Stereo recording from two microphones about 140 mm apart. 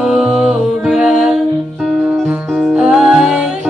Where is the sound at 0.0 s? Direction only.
5° right (ahead or behind).